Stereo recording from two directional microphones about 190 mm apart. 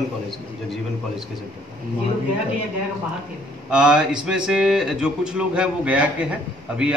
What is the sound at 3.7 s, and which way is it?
Speech, 5° right (ahead or behind).